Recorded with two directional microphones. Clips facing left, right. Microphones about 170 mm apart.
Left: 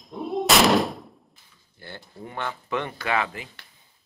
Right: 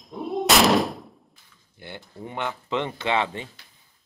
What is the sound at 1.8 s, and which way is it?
Speech, 20° right (ahead or behind).